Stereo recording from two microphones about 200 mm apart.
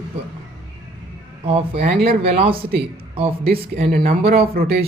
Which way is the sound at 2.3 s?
25° right (ahead or behind).